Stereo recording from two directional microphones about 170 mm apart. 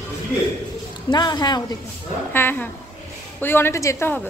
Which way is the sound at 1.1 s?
25° left (ahead or behind).